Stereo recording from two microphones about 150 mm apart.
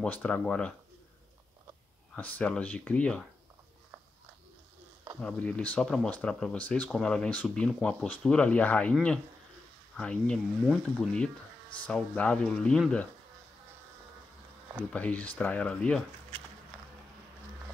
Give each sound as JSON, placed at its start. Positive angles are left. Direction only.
{"t": 0.0, "sound": "speech", "side_deg": 5}
{"t": 2.1, "sound": "speech", "side_deg": 10}
{"t": 5.2, "sound": "speech", "side_deg": 10}
{"t": 14.9, "sound": "speech", "side_deg": 10}